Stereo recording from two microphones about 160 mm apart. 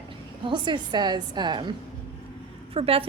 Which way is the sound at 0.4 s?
30° right (ahead or behind).